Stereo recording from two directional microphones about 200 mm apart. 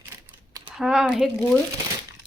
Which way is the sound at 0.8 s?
Centre (ahead or behind).